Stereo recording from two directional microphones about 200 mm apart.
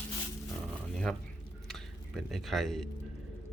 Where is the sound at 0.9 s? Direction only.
Centre (ahead or behind).